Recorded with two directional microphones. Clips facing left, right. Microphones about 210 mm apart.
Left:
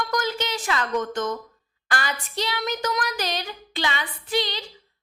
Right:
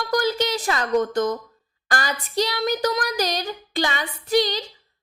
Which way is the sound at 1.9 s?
40° right (ahead or behind).